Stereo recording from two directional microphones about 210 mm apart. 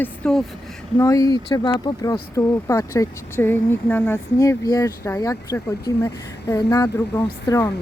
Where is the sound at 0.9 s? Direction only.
15° left (ahead or behind).